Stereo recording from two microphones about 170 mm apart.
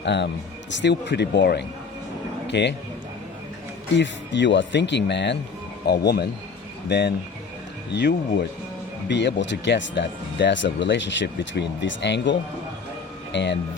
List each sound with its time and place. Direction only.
0.0 s speech: 90° left
2.5 s a man's voice: 90° left
3.9 s speech: 90° left
5.8 s speech: 70° left (ahead or behind)
6.8 s speech: 80° left